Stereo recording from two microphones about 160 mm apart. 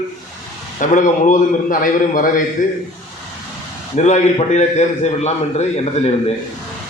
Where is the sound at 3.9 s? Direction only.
45° left (ahead or behind).